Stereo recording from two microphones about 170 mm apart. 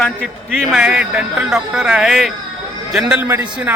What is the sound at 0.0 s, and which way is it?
A man's voice, 5° left (ahead or behind).